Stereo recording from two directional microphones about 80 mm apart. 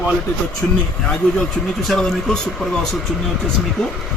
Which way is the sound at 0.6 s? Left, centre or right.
Centre.